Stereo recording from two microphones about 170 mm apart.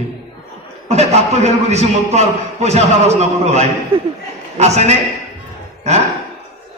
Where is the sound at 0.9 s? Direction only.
40° right (ahead or behind).